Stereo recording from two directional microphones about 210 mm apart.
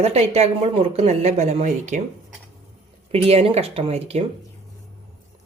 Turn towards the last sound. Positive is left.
turn(degrees=-30)  # may be behind; listen again after turning